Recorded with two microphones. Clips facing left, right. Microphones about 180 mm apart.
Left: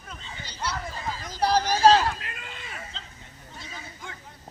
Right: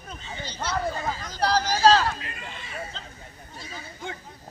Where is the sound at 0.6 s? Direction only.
50° right (ahead or behind).